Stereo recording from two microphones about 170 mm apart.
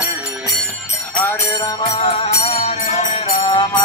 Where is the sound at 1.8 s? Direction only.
30° left (ahead or behind).